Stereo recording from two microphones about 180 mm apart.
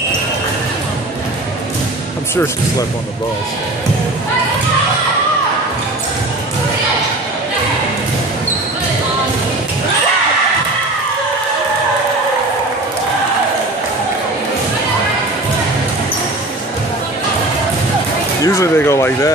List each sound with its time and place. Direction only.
18.4 s speech: 15° left (ahead or behind)